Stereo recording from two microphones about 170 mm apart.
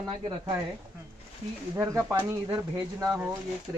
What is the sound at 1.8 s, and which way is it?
Speech, 20° right (ahead or behind).